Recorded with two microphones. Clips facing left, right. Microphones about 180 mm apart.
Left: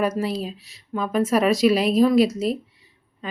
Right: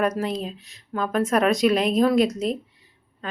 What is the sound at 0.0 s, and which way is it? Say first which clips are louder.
A woman's voice: left 1 dB; 5° left (ahead or behind).